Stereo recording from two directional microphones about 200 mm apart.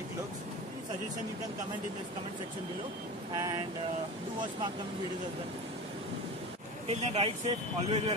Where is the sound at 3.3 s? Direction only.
20° right (ahead or behind).